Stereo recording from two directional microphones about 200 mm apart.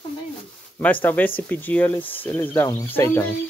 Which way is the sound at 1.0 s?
10° left (ahead or behind).